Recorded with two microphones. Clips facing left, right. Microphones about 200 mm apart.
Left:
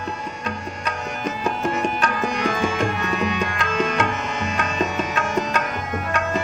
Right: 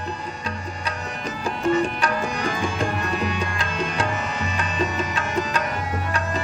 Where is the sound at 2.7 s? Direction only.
30° right (ahead or behind).